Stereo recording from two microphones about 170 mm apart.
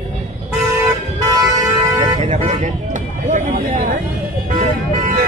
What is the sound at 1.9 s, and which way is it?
Vehicle, 25° right (ahead or behind).